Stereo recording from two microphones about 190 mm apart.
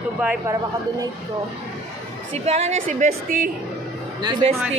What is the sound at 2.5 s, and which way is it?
A woman's voice, 35° right (ahead or behind).